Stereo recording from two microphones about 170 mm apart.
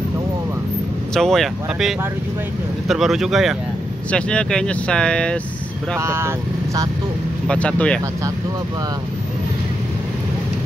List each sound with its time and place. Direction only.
1.1 s speech: centre (ahead or behind)
5.9 s speech: 15° right (ahead or behind)
7.4 s speech: 5° left (ahead or behind)